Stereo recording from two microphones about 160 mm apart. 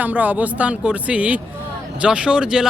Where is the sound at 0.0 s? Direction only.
10° right (ahead or behind).